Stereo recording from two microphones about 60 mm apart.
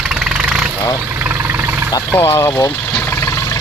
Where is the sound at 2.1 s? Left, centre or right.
Left.